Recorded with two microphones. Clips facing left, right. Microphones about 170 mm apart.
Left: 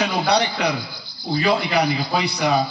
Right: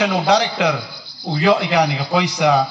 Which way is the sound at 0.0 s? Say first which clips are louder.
Right 3 dB; 90° right.